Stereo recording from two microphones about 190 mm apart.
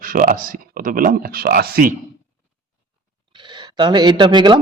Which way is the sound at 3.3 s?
25° right (ahead or behind).